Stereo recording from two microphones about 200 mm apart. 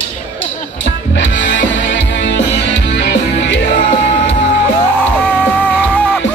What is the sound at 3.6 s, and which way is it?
Music, 35° left (ahead or behind).